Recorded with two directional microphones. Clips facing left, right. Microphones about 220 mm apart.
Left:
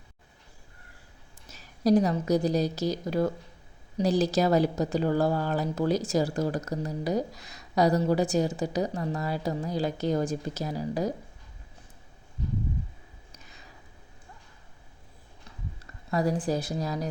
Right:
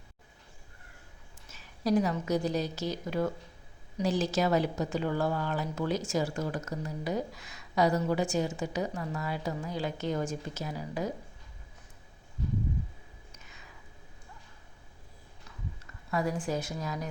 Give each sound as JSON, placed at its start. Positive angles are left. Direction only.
{"t": 1.5, "sound": "a woman's voice", "side_deg": 35}
{"t": 13.3, "sound": "a sound", "side_deg": 35}
{"t": 16.0, "sound": "a woman's voice", "side_deg": 35}